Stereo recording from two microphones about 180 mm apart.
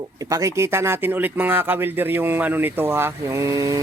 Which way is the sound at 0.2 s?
20° right (ahead or behind).